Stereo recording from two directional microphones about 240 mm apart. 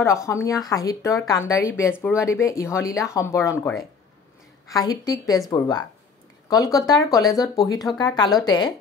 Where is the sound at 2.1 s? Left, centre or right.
Centre.